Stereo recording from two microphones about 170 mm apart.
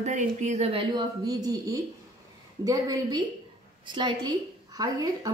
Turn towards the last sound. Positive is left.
turn(degrees=-20)  # may be behind; listen again after turning